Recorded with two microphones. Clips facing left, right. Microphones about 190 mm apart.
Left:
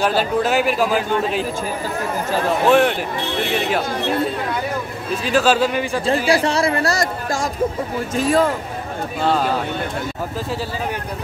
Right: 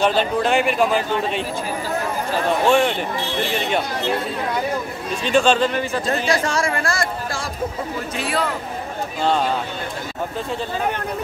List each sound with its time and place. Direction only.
0.0 s a man's voice: 5° left (ahead or behind)
2.7 s a man's voice: 5° left (ahead or behind)
5.2 s speech: 5° left (ahead or behind)
6.4 s speech: 35° left (ahead or behind)